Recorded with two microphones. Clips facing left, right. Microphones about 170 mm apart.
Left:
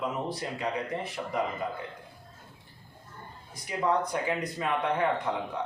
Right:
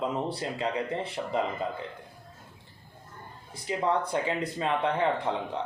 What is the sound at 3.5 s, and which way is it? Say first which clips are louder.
Speech: even; 25° right (ahead or behind).